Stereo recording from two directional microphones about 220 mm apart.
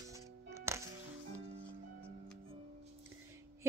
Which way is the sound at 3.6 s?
10° right (ahead or behind).